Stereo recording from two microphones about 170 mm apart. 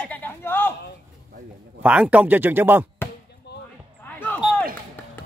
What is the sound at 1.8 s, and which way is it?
Speech, 10° right (ahead or behind).